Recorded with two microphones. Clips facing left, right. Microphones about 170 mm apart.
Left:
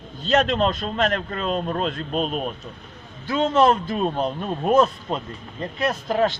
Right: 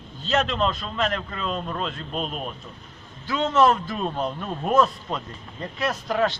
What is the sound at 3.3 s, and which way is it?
Speech, 30° left (ahead or behind).